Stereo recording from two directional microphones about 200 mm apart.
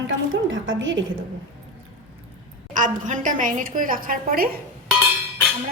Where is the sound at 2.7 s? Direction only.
40° right (ahead or behind).